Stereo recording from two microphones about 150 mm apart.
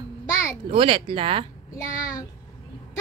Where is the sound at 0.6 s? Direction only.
35° right (ahead or behind).